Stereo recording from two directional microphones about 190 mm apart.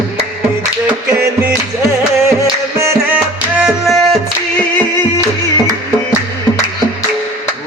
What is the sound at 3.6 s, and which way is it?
Music, centre (ahead or behind).